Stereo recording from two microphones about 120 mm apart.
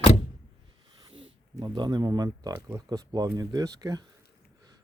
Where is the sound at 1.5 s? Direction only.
30° right (ahead or behind).